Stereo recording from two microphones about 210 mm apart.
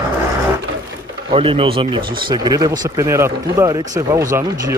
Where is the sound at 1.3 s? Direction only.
25° right (ahead or behind).